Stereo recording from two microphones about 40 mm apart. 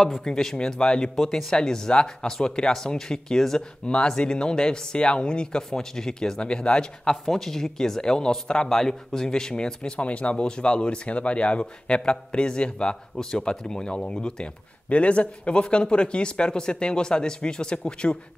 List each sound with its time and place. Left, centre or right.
0.2 s speech: centre
3.8 s speech: left
7.1 s speech: centre; by 18.1 s left